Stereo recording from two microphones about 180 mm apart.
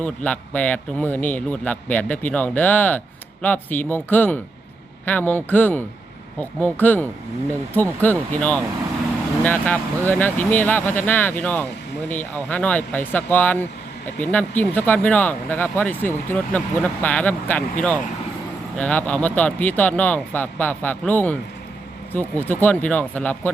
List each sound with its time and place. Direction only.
0.0 s speech: 5° left (ahead or behind)